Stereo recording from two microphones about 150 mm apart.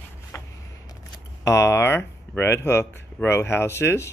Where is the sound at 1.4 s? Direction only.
20° left (ahead or behind).